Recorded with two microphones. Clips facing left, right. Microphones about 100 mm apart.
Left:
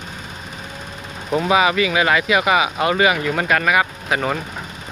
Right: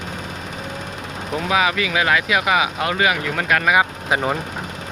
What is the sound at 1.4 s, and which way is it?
Speech, 5° left (ahead or behind).